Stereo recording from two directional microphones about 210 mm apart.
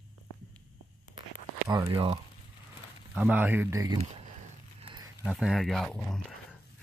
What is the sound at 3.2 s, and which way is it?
Speech, 5° right (ahead or behind).